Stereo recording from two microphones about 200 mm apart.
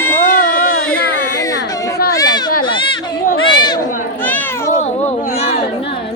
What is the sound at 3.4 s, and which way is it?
Chatter, 20° left (ahead or behind).